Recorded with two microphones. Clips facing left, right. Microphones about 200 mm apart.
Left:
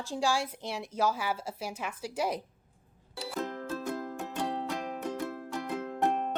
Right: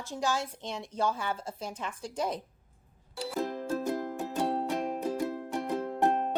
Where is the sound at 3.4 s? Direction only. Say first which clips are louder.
Right 4 dB; 15° right (ahead or behind).